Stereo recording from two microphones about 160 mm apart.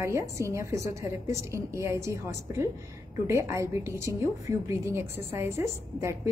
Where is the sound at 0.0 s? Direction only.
15° right (ahead or behind).